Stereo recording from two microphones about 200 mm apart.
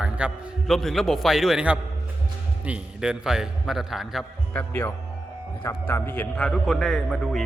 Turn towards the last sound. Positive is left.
turn(degrees=0)  # may be behind; listen again after turning